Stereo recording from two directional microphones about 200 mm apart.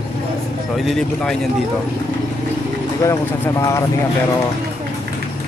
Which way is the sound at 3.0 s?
15° left (ahead or behind).